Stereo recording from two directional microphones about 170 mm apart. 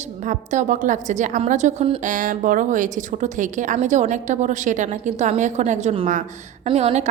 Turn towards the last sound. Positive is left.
turn(degrees=-35)  # may be behind; listen again after turning